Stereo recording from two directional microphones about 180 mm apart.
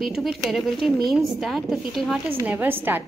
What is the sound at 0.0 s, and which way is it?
Speech, centre (ahead or behind).